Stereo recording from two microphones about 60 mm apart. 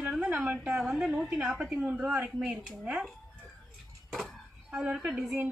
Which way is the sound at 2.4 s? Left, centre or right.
Centre.